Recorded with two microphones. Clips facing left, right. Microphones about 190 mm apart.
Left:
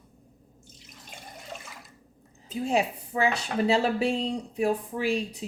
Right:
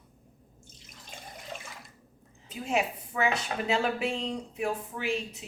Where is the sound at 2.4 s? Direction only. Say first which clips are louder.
Left 4 dB; 30° left (ahead or behind).